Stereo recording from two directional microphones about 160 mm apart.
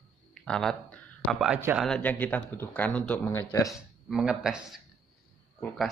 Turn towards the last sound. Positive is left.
turn(degrees=10)  # may be behind; listen again after turning